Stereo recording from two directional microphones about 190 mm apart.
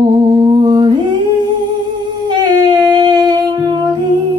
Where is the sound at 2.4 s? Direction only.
25° right (ahead or behind).